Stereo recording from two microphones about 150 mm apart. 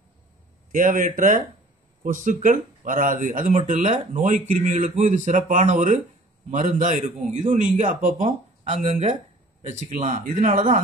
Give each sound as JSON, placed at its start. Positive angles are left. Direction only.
{"t": 0.7, "sound": "speech", "side_deg": -60}